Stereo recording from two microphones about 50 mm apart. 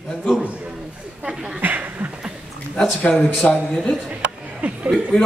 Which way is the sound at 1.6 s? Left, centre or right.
Right.